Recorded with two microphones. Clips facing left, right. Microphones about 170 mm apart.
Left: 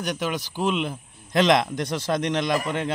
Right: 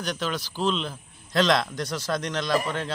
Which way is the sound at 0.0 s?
15° left (ahead or behind).